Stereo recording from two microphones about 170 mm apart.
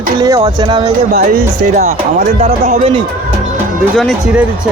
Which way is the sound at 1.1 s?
60° right (ahead or behind).